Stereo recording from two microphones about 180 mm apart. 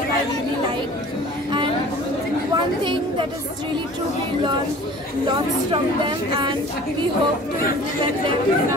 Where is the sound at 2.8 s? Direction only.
25° right (ahead or behind).